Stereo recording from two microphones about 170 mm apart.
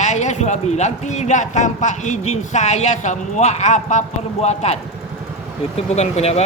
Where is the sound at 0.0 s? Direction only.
45° left (ahead or behind).